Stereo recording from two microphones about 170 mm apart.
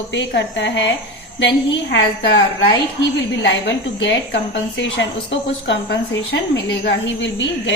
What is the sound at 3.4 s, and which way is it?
A woman's voice, 90° left.